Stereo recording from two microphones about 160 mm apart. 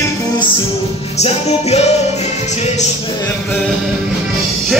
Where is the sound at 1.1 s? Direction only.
40° left (ahead or behind).